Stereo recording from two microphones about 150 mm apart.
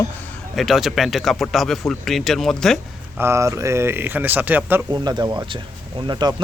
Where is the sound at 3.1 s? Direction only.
15° right (ahead or behind).